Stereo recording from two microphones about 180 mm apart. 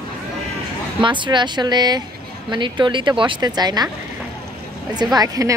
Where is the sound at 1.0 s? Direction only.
25° right (ahead or behind).